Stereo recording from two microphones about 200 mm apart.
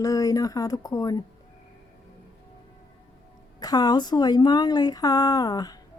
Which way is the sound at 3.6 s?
20° left (ahead or behind).